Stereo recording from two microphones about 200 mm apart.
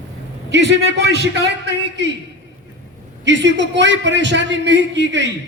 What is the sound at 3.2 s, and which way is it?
A man's voice, 65° right (ahead or behind).